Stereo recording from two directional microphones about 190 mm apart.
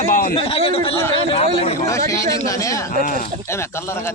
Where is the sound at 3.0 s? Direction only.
45° left (ahead or behind).